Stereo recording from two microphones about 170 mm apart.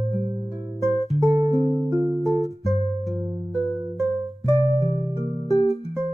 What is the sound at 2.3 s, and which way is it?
Music, centre (ahead or behind).